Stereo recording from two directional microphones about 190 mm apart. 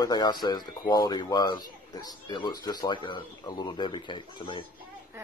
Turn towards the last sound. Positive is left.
turn(degrees=25)  # may be behind; listen again after turning